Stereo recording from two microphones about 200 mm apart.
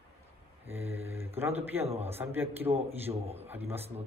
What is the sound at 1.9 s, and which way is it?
Speech, 30° right (ahead or behind).